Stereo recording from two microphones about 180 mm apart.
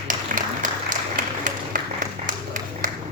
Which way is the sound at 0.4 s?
45° right (ahead or behind).